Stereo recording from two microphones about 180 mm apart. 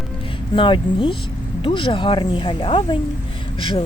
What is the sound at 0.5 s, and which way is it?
Speech, 30° left (ahead or behind).